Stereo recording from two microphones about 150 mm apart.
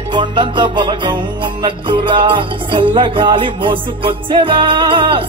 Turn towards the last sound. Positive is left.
turn(degrees=-35)  # may be behind; listen again after turning